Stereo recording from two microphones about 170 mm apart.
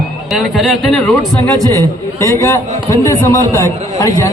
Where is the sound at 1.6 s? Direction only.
20° right (ahead or behind).